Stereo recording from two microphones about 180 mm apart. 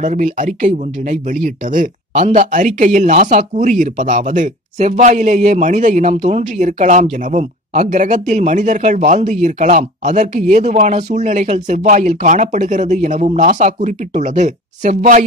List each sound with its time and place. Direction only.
0.0 s speech: 45° right (ahead or behind)